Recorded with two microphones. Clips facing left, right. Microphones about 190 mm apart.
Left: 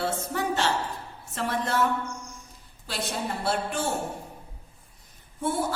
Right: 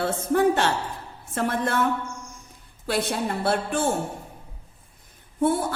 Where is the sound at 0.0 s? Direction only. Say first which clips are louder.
Right 8 dB; 55° right (ahead or behind).